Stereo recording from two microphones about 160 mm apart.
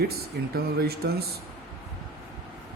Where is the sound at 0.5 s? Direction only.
75° right (ahead or behind).